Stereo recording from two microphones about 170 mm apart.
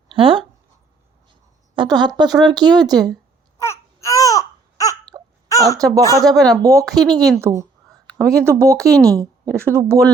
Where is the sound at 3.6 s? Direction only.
15° left (ahead or behind).